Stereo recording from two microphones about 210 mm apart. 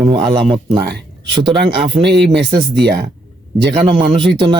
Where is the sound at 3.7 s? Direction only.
25° right (ahead or behind).